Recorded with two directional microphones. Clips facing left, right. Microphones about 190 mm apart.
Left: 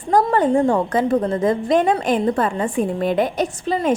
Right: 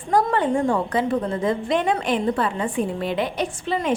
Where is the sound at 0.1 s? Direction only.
40° left (ahead or behind).